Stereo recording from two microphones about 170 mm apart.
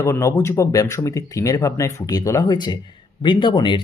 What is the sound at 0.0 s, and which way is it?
Speech, 15° left (ahead or behind).